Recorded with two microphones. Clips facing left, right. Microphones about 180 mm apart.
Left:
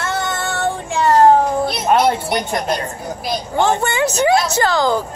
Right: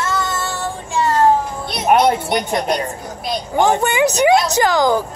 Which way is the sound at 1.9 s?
15° right (ahead or behind).